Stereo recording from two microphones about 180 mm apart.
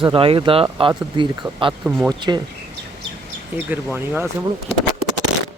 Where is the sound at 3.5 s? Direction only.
10° right (ahead or behind).